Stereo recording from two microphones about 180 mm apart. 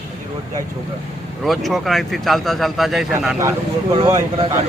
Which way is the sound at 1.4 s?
Centre (ahead or behind).